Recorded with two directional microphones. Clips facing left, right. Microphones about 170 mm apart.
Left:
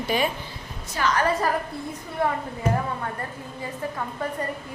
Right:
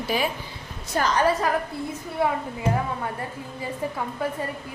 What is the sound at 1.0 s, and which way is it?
Speech, 50° right (ahead or behind).